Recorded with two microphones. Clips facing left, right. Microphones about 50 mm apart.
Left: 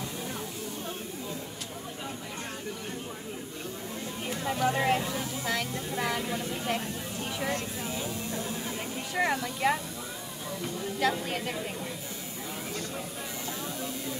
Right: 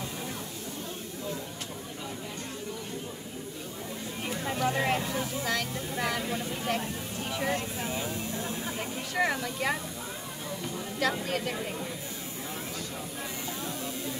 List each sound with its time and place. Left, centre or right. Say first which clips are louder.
4.3 s speech: left 1 dB; centre
7.4 s speech: right 2 dB; right
9.1 s speech: even; centre
11.0 s speech: even; centre